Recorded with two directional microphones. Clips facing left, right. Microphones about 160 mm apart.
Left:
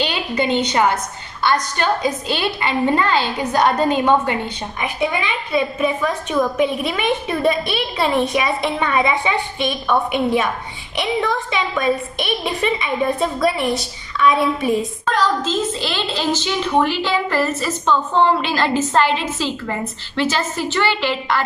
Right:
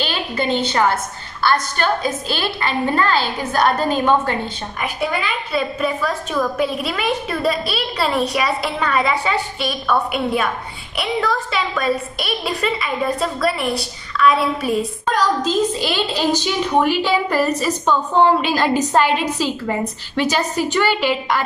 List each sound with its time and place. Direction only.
0.0 s a woman's voice: 15° left (ahead or behind)
15.8 s a woman's voice: 15° right (ahead or behind)